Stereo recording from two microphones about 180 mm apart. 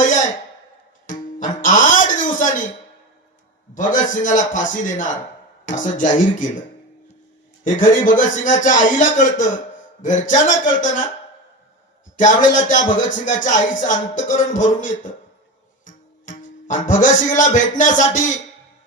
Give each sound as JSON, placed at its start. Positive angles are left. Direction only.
{"t": 0.0, "sound": "a sound", "side_deg": 45}
{"t": 1.4, "sound": "a sound", "side_deg": 45}
{"t": 3.8, "sound": "speech", "side_deg": 45}
{"t": 7.6, "sound": "a man's voice", "side_deg": 45}
{"t": 10.0, "sound": "speech", "side_deg": 45}
{"t": 12.1, "sound": "speech", "side_deg": 45}
{"t": 15.8, "sound": "music", "side_deg": 45}
{"t": 17.2, "sound": "speech", "side_deg": 45}